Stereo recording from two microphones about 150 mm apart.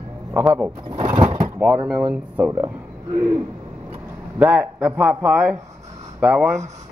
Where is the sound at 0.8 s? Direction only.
30° right (ahead or behind).